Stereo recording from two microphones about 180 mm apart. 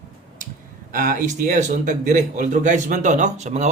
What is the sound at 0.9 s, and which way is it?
A man's voice, 50° right (ahead or behind).